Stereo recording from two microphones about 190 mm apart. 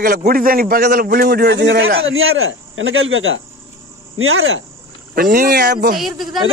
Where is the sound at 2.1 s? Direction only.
90° right.